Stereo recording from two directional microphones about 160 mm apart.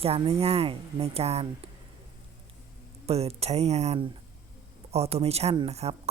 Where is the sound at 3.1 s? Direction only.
40° right (ahead or behind).